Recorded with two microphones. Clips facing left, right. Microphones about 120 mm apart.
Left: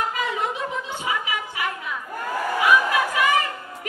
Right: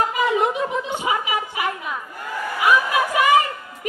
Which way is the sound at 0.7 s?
20° right (ahead or behind).